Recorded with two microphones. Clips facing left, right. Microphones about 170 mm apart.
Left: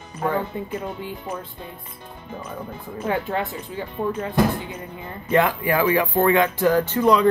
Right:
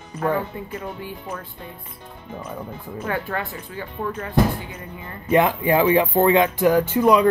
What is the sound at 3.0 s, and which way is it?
Speech, 20° left (ahead or behind).